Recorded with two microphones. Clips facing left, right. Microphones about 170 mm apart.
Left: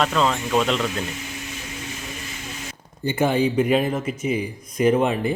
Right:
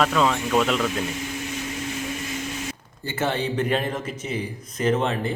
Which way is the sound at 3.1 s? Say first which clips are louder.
Left 5 dB; 15° left (ahead or behind).